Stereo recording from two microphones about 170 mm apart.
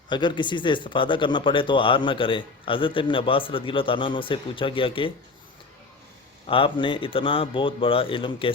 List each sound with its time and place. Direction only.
0.1 s speech: 25° left (ahead or behind)
6.5 s a man's voice: 30° left (ahead or behind)